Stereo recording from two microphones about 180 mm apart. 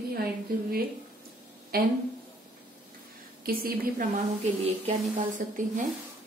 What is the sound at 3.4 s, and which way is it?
Speech, 55° right (ahead or behind).